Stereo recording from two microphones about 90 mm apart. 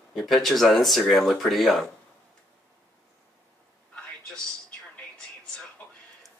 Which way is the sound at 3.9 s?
15° left (ahead or behind).